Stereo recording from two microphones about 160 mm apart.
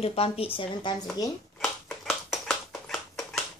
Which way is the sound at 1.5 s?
5° left (ahead or behind).